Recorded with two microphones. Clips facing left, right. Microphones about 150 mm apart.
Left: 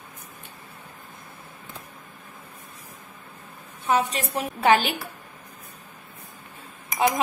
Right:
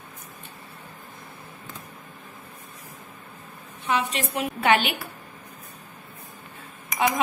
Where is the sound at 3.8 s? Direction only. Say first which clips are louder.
Left 2 dB; 40° left (ahead or behind).